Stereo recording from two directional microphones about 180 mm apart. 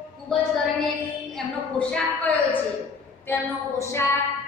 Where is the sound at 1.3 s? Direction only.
5° left (ahead or behind).